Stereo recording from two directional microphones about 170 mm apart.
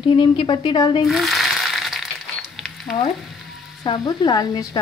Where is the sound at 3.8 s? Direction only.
25° left (ahead or behind).